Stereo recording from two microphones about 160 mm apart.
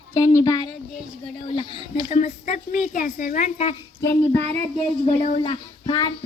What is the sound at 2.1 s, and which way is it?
A woman's voice, 50° left (ahead or behind).